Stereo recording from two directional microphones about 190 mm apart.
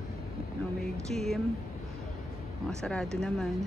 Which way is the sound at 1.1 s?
Centre (ahead or behind).